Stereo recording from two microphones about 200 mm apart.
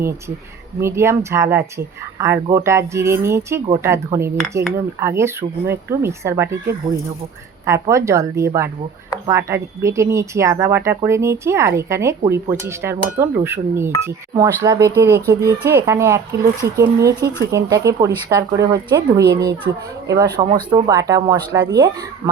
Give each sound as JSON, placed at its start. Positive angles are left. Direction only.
{"t": 0.8, "sound": "speech", "side_deg": -15}